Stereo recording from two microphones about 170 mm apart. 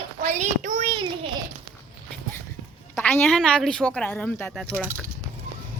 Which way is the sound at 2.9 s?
10° left (ahead or behind).